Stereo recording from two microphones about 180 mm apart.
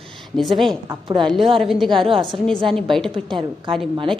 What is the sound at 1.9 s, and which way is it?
Speech, 30° right (ahead or behind).